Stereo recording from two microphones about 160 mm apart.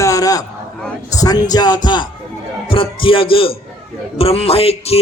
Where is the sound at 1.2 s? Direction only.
25° left (ahead or behind).